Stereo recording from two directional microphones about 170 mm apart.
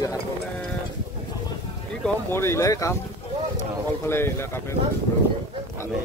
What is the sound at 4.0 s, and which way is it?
Speech, 15° left (ahead or behind).